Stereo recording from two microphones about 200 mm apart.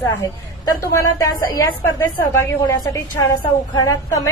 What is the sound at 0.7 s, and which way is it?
A woman's voice, 15° left (ahead or behind).